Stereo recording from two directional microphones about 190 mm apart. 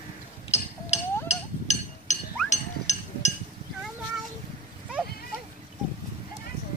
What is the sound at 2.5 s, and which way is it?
Chink, 35° left (ahead or behind).